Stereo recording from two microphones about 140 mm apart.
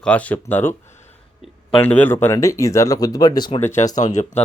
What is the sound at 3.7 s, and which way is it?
Speech, 60° left (ahead or behind).